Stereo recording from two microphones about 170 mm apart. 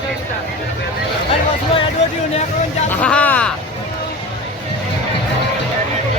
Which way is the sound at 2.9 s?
10° left (ahead or behind).